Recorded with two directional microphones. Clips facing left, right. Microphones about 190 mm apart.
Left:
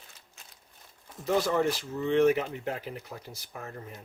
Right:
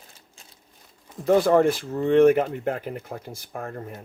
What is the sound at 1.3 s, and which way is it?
Speech, 55° right (ahead or behind).